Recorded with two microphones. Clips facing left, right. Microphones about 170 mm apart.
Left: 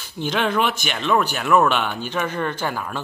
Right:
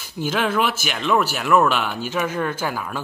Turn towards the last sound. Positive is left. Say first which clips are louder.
# even
turn(degrees=-5)  # may be behind; listen again after turning